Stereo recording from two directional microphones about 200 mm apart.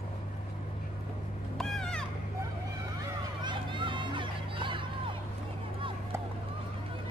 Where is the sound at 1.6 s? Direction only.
5° left (ahead or behind).